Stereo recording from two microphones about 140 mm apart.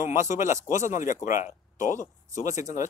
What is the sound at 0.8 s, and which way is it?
Speech, 65° left (ahead or behind).